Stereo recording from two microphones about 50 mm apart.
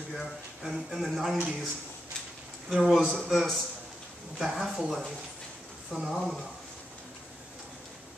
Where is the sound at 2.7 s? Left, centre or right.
Centre.